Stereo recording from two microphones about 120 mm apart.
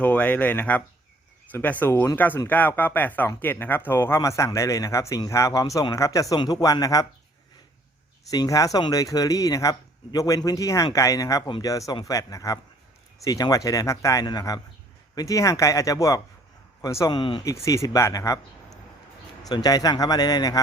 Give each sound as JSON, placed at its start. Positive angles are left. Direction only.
{"t": 0.0, "sound": "speech", "side_deg": 15}
{"t": 8.3, "sound": "speech", "side_deg": 30}
{"t": 17.1, "sound": "speech", "side_deg": 40}
{"t": 17.4, "sound": "speech", "side_deg": 25}
{"t": 19.4, "sound": "speech", "side_deg": 30}